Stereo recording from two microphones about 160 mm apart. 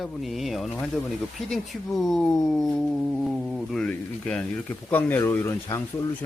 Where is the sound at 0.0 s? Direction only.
Centre (ahead or behind).